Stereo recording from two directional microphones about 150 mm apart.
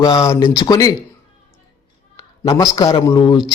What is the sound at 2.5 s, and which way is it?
Speech, 25° left (ahead or behind).